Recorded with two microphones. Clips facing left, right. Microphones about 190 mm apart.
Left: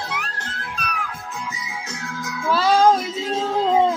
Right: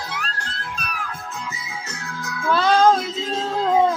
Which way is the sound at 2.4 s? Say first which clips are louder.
Even; 5° left (ahead or behind).